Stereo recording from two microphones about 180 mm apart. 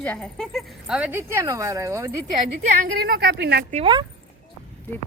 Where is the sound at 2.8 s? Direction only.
60° right (ahead or behind).